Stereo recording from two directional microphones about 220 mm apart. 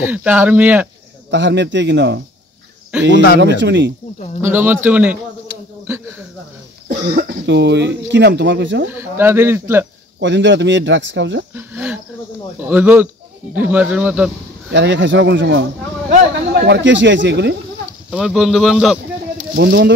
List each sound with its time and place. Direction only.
0.0 s speech: 5° right (ahead or behind)
1.3 s speech: 55° right (ahead or behind)
2.9 s speech: 5° right (ahead or behind)
3.5 s speech: 55° right (ahead or behind)
4.4 s speech: 10° right (ahead or behind)
7.1 s speech: 40° right (ahead or behind)
8.8 s speech: 10° right (ahead or behind)
10.2 s speech: 55° right (ahead or behind)
11.5 s cricket: 5° right (ahead or behind)
12.5 s speech: 10° right (ahead or behind)
14.7 s speech: 50° right (ahead or behind)
16.6 s speech: 55° right (ahead or behind)
18.1 s speech: centre (ahead or behind)
19.5 s speech: 50° right (ahead or behind)